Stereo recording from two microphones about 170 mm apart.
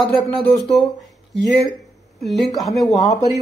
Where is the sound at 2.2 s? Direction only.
Centre (ahead or behind).